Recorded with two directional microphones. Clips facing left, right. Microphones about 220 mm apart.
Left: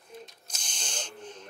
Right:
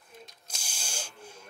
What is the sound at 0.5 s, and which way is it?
Hiss, 10° right (ahead or behind).